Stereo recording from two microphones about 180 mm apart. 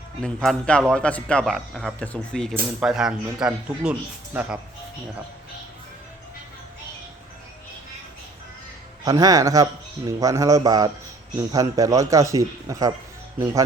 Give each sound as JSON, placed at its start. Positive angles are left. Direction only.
{"t": 0.2, "sound": "speech", "side_deg": 5}
{"t": 9.0, "sound": "speech", "side_deg": -20}